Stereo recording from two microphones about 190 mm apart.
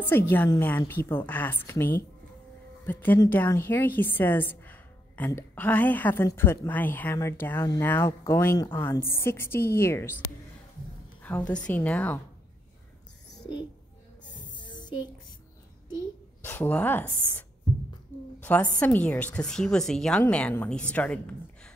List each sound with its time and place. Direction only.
0.0 s a woman's voice: 10° left (ahead or behind)
11.2 s a woman's voice: 10° left (ahead or behind)
14.6 s a sound: 25° left (ahead or behind)
16.4 s a woman's voice: 10° left (ahead or behind)
18.4 s a woman's voice: 10° left (ahead or behind)